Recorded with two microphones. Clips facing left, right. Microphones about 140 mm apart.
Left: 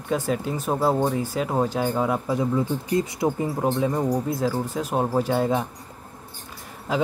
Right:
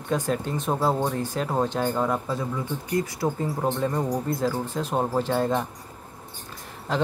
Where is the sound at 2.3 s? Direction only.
20° left (ahead or behind).